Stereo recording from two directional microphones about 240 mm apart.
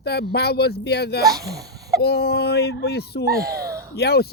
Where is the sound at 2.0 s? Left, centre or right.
Left.